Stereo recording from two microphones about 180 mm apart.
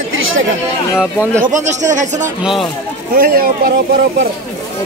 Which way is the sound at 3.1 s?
55° right (ahead or behind).